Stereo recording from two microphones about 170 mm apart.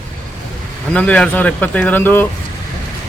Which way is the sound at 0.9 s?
10° left (ahead or behind).